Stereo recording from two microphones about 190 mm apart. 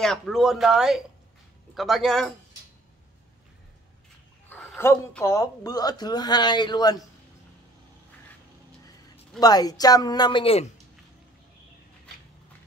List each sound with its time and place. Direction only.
0.0 s speech: centre (ahead or behind)
4.5 s speech: 10° left (ahead or behind)
9.4 s speech: 20° left (ahead or behind)